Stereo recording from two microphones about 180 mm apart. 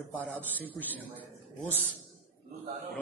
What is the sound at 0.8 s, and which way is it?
Speech, 10° right (ahead or behind).